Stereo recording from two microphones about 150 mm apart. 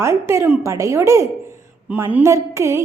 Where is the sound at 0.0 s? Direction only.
15° right (ahead or behind).